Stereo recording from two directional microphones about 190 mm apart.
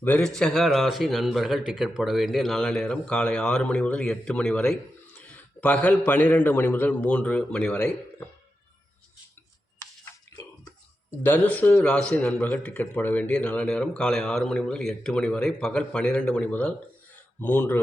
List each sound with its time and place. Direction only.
0.0 s speech: 5° left (ahead or behind)
11.2 s speech: 10° left (ahead or behind)